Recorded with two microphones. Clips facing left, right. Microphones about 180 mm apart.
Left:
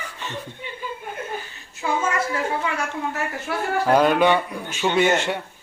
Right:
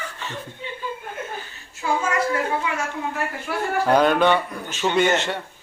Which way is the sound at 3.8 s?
5° left (ahead or behind).